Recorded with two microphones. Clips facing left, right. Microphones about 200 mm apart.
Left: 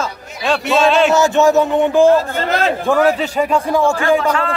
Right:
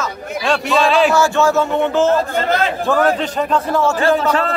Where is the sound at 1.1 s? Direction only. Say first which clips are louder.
Left 2 dB; 20° left (ahead or behind).